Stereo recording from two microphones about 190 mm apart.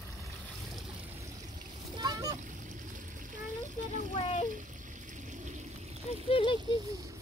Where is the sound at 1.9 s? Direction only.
20° right (ahead or behind).